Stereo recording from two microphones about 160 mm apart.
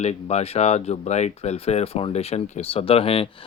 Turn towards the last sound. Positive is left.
turn(degrees=35)  # may be behind; listen again after turning